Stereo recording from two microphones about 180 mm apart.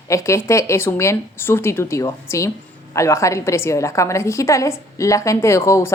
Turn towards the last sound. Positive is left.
turn(degrees=15)  # may be behind; listen again after turning